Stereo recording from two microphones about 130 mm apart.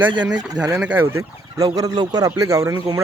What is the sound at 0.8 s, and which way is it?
Speech, 10° right (ahead or behind).